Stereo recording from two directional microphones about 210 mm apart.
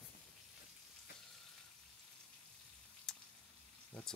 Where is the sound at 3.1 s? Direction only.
5° left (ahead or behind).